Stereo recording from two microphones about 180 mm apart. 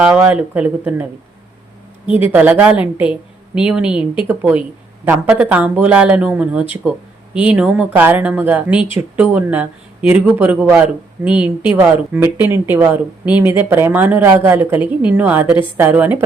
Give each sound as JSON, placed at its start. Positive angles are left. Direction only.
{"t": 0.0, "sound": "speech", "side_deg": -5}
{"t": 2.3, "sound": "speech", "side_deg": -10}